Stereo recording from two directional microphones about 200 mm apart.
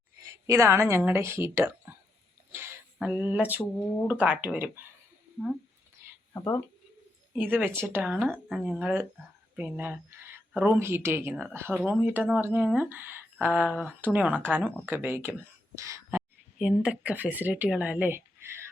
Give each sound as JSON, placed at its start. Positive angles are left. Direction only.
{"t": 0.4, "sound": "speech", "side_deg": -15}
{"t": 2.5, "sound": "a sound", "side_deg": -10}
{"t": 4.0, "sound": "speech", "side_deg": -5}
{"t": 6.3, "sound": "speech", "side_deg": 15}
{"t": 7.3, "sound": "speech", "side_deg": -10}